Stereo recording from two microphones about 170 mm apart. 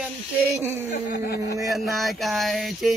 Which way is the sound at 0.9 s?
55° left (ahead or behind).